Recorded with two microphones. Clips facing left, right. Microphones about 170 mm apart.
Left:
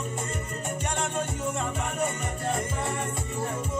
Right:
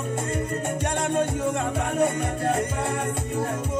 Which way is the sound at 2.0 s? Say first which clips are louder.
Right 8 dB; 65° right (ahead or behind).